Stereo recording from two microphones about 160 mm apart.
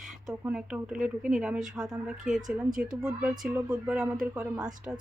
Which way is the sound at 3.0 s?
5° right (ahead or behind).